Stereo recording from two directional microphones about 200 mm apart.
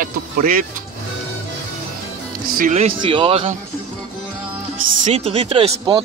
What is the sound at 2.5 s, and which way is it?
Speech, 40° right (ahead or behind).